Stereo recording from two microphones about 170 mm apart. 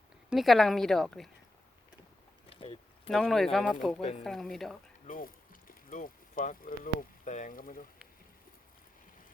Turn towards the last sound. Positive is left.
turn(degrees=55)  # may be behind; listen again after turning